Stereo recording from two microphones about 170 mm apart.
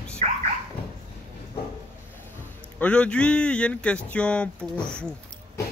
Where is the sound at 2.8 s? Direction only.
5° left (ahead or behind).